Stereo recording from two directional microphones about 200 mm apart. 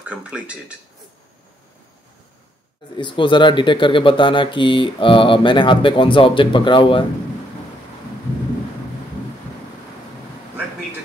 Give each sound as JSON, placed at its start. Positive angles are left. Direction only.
{"t": 0.1, "sound": "speech", "side_deg": -5}
{"t": 3.0, "sound": "speech", "side_deg": 25}